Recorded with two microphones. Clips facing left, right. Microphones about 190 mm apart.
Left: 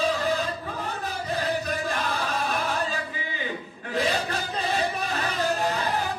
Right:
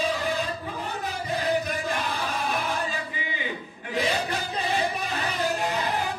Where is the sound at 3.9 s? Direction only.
15° right (ahead or behind).